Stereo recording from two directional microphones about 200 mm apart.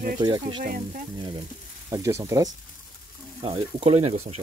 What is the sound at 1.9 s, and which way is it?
Speech, 15° right (ahead or behind).